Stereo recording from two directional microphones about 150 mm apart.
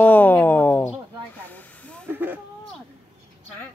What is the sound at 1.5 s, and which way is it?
Hiss, 10° left (ahead or behind).